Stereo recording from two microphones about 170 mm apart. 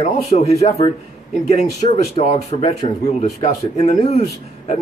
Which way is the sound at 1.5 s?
40° left (ahead or behind).